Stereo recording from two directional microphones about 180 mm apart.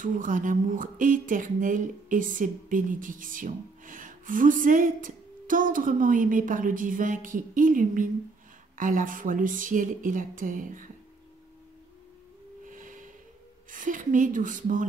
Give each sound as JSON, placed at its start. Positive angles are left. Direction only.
{"t": 0.0, "sound": "speech", "side_deg": -45}
{"t": 12.6, "sound": "snort", "side_deg": -45}
{"t": 13.7, "sound": "speech", "side_deg": -45}